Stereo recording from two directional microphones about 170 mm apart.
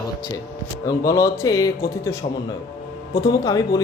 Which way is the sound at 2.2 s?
35° left (ahead or behind).